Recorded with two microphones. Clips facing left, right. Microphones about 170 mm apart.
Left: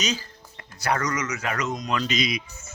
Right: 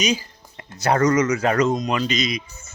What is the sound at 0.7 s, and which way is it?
Speech, 25° right (ahead or behind).